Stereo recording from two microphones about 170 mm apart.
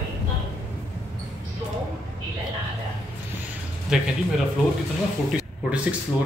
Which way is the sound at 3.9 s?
5° right (ahead or behind).